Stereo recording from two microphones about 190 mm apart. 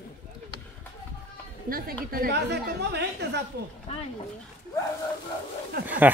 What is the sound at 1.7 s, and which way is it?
A woman's voice, 50° right (ahead or behind).